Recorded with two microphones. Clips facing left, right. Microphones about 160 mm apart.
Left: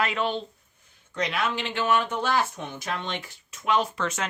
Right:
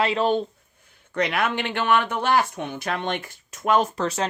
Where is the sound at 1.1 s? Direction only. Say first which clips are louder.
Right 4 dB; 60° right (ahead or behind).